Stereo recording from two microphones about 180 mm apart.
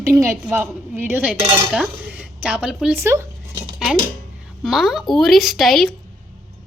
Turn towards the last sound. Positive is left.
turn(degrees=0)  # may be behind; listen again after turning